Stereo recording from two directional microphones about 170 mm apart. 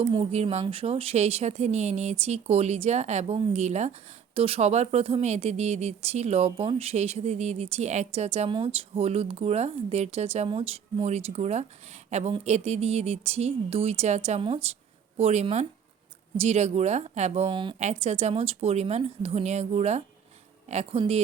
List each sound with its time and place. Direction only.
0.1 s speech: 35° right (ahead or behind)
17.7 s speech: 40° right (ahead or behind)